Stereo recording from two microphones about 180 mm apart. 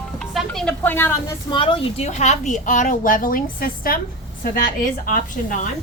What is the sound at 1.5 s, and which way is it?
A woman's voice, 30° left (ahead or behind).